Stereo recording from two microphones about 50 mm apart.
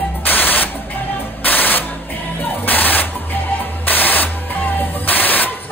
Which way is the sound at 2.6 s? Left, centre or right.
Left.